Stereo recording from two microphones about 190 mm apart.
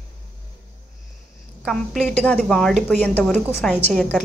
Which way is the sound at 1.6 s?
Centre (ahead or behind).